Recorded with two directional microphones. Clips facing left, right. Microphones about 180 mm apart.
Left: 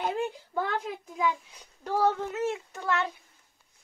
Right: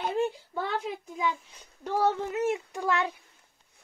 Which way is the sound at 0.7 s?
Centre (ahead or behind).